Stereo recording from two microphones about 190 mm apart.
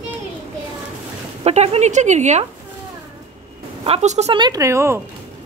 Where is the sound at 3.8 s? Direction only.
35° right (ahead or behind).